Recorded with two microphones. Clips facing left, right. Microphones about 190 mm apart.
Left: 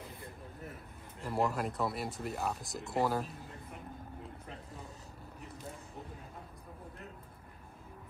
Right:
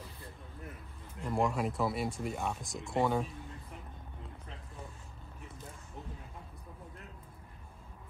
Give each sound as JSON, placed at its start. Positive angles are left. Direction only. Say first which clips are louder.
{"t": 1.2, "sound": "speech", "louder": "right 1 dB", "side_deg": 5}